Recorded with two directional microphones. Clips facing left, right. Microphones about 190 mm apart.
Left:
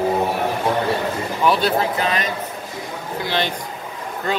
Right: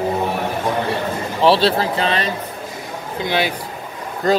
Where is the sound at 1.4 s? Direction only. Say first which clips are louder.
Right 4 dB; 30° right (ahead or behind).